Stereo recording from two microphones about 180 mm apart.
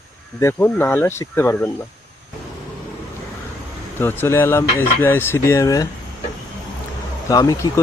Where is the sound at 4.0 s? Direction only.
10° left (ahead or behind).